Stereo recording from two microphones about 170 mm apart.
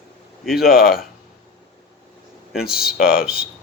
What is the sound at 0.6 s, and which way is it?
Speech, 60° left (ahead or behind).